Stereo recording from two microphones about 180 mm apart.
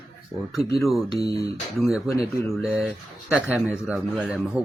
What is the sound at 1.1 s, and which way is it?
Speech, 20° left (ahead or behind).